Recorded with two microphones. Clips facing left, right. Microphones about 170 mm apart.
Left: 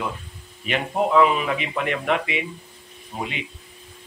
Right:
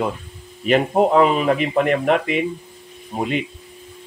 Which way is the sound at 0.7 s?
40° right (ahead or behind).